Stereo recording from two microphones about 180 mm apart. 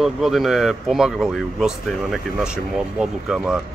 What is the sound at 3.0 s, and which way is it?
Speech, 5° right (ahead or behind).